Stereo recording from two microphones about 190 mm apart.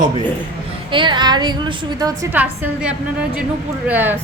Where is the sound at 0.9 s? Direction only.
25° right (ahead or behind).